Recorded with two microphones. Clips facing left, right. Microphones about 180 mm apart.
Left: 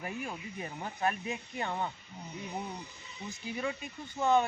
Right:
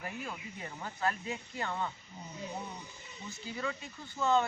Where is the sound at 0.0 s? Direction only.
15° left (ahead or behind).